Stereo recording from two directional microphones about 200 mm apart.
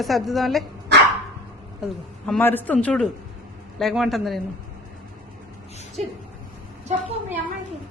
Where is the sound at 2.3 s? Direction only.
10° left (ahead or behind).